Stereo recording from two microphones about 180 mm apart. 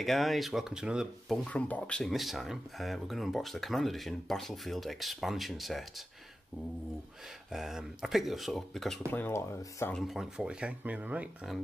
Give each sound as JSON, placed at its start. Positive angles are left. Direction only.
{"t": 0.0, "sound": "speech", "side_deg": 0}
{"t": 1.4, "sound": "speech", "side_deg": 5}
{"t": 7.5, "sound": "speech", "side_deg": 0}
{"t": 9.1, "sound": "speech", "side_deg": 10}
{"t": 9.9, "sound": "speech", "side_deg": 0}